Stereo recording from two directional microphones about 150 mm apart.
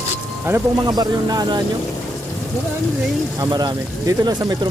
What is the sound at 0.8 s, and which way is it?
Speech, 25° right (ahead or behind).